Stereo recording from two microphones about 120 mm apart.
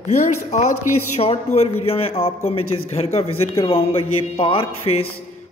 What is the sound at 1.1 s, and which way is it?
A man's voice, 60° left (ahead or behind).